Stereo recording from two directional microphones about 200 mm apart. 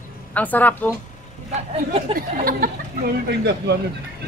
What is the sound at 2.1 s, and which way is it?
Speech, 45° right (ahead or behind).